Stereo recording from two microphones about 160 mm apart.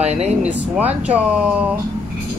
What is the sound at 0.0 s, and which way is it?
Speech, 45° right (ahead or behind).